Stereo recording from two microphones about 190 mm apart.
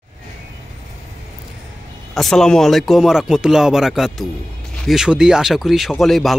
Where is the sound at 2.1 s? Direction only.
Centre (ahead or behind).